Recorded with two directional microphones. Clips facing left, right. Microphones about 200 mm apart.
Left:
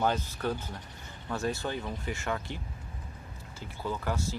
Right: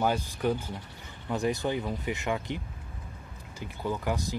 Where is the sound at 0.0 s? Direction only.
10° right (ahead or behind).